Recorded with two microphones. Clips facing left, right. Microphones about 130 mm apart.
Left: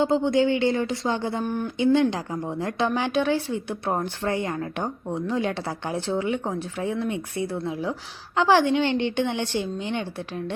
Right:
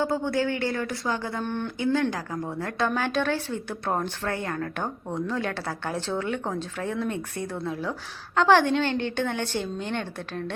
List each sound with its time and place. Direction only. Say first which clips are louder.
0.0 s speech: left 5 dB; 20° left (ahead or behind)
1.5 s speech: left 2 dB; 10° left (ahead or behind)
1.8 s speech: left 5 dB; 20° left (ahead or behind)